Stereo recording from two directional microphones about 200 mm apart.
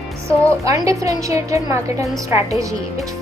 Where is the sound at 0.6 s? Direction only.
15° right (ahead or behind).